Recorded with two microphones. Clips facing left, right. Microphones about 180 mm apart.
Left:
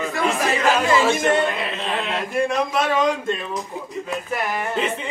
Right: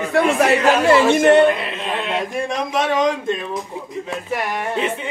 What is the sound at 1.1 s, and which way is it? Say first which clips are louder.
Speech: right 7 dB; 65° right (ahead or behind).